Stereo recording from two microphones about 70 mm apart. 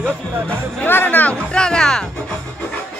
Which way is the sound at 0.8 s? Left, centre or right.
Left.